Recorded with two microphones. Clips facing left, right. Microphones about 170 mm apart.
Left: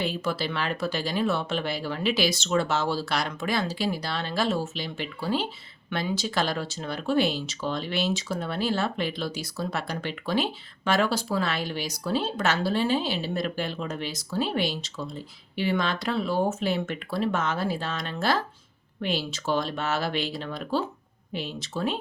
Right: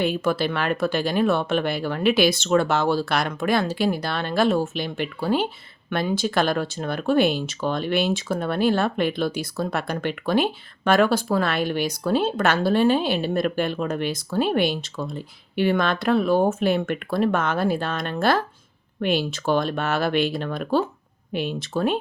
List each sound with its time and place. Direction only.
0.0 s speech: 55° right (ahead or behind)